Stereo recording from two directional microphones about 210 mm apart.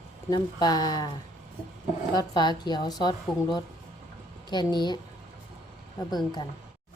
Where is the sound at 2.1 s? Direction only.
20° left (ahead or behind).